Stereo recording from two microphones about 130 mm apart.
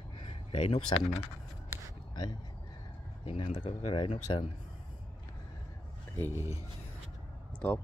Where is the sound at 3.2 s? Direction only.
40° left (ahead or behind).